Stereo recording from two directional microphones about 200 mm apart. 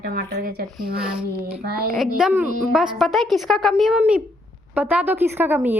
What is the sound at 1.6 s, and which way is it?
Speech, 50° right (ahead or behind).